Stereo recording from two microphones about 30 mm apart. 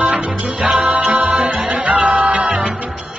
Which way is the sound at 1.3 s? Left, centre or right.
Right.